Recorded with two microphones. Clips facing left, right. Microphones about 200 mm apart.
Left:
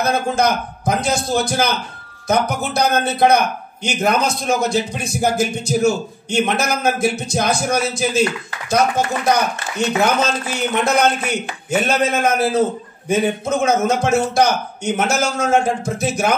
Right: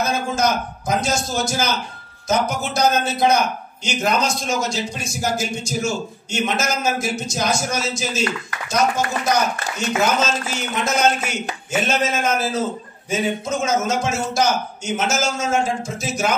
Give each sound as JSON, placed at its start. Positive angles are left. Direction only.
{"t": 0.0, "sound": "a man's voice", "side_deg": 60}